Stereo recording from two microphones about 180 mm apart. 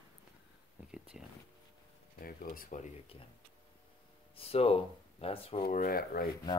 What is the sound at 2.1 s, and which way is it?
Speech, 50° left (ahead or behind).